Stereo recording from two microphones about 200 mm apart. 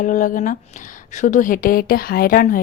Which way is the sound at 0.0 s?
40° left (ahead or behind).